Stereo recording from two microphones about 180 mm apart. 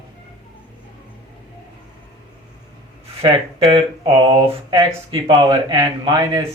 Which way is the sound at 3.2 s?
30° right (ahead or behind).